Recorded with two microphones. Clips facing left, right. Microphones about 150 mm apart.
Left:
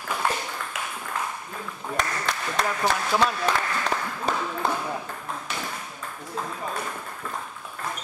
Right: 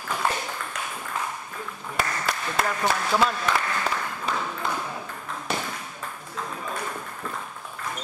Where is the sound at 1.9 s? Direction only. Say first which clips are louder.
Right 1 dB; 5° right (ahead or behind).